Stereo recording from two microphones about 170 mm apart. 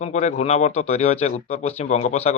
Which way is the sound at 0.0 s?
40° left (ahead or behind).